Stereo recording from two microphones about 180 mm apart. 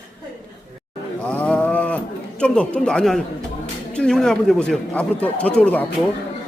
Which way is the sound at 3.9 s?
5° left (ahead or behind).